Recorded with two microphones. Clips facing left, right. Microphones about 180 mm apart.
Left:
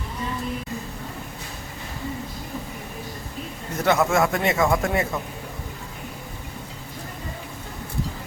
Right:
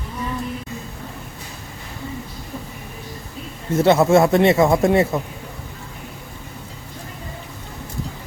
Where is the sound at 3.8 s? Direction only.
30° right (ahead or behind).